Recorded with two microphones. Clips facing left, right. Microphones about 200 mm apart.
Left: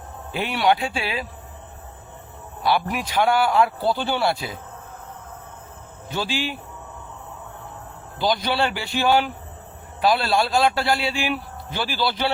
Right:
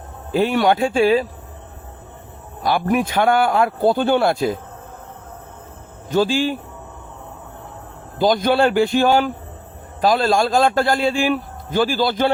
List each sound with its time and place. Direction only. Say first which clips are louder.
0.3 s a man's voice: right 5 dB; 40° right (ahead or behind)
2.6 s a man's voice: right 5 dB; 50° right (ahead or behind)
6.1 s a man's voice: right 9 dB; 45° right (ahead or behind)
8.2 s a man's voice: right 7 dB; 45° right (ahead or behind)